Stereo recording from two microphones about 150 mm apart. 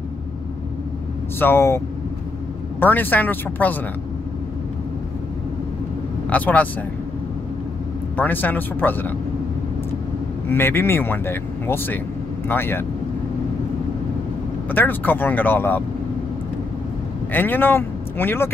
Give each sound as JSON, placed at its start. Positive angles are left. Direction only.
{"t": 1.4, "sound": "speech", "side_deg": 15}
{"t": 2.8, "sound": "speech", "side_deg": 10}
{"t": 6.3, "sound": "speech", "side_deg": 10}
{"t": 8.2, "sound": "speech", "side_deg": 10}
{"t": 10.5, "sound": "speech", "side_deg": 15}
{"t": 14.7, "sound": "speech", "side_deg": 10}
{"t": 17.3, "sound": "speech", "side_deg": 10}